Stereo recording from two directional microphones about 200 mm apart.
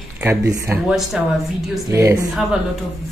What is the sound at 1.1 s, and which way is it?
Speech, 5° right (ahead or behind).